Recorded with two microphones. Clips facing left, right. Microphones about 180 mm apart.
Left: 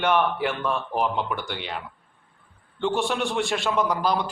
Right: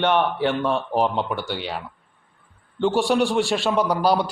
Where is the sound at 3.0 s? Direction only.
35° right (ahead or behind).